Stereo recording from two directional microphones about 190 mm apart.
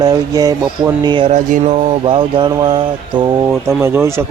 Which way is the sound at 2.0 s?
25° right (ahead or behind).